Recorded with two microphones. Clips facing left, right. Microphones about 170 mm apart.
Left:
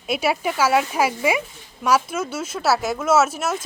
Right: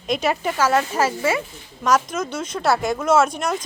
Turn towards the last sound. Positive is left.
turn(degrees=5)  # may be behind; listen again after turning